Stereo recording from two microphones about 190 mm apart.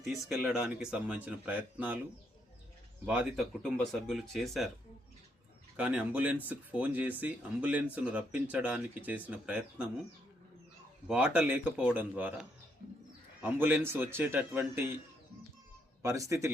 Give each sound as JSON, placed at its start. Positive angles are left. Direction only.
{"t": 0.3, "sound": "speech", "side_deg": -5}
{"t": 3.1, "sound": "speech", "side_deg": -5}
{"t": 5.7, "sound": "speech", "side_deg": -5}
{"t": 11.1, "sound": "speech", "side_deg": -5}
{"t": 16.0, "sound": "speech", "side_deg": -15}